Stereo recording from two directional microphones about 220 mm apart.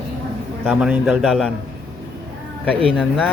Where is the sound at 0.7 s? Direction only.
5° right (ahead or behind).